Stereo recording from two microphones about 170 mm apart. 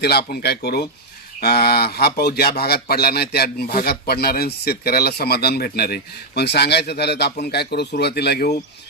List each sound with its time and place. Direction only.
0.0 s a man's voice: 70° left (ahead or behind)